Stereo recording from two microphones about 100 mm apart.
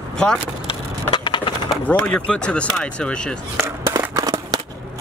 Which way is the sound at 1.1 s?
55° left (ahead or behind).